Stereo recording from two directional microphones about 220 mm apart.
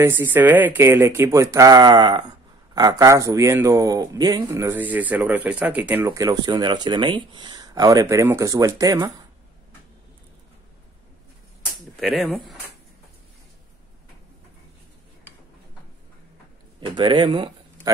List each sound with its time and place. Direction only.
0.0 s speech: 10° right (ahead or behind)
12.0 s speech: centre (ahead or behind)
16.8 s speech: 20° right (ahead or behind)